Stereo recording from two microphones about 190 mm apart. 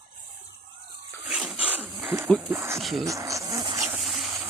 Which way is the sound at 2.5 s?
15° right (ahead or behind).